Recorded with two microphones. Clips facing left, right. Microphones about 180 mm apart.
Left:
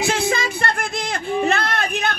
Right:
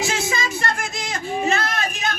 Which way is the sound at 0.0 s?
55° left (ahead or behind).